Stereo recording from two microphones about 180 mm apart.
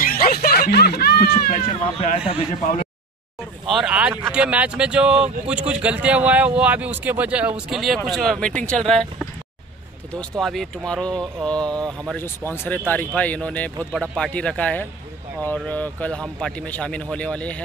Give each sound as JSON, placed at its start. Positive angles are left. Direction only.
{"t": 0.0, "sound": "speech", "side_deg": 55}
{"t": 2.0, "sound": "a man's voice", "side_deg": 30}
{"t": 3.6, "sound": "speech", "side_deg": 0}
{"t": 10.3, "sound": "speech", "side_deg": 0}